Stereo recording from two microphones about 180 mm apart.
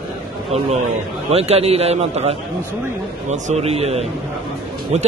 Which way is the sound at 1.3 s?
35° right (ahead or behind).